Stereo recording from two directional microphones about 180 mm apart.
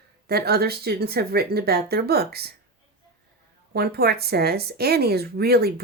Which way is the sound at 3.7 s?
60° right (ahead or behind).